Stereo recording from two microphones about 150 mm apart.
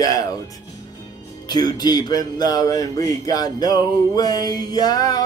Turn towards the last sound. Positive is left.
turn(degrees=25)  # may be behind; listen again after turning